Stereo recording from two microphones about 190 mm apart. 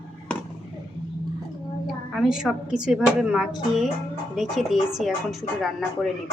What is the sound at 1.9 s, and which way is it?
A woman's voice, centre (ahead or behind).